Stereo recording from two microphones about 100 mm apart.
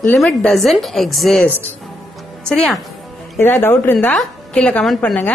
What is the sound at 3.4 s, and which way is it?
Speech, 20° left (ahead or behind).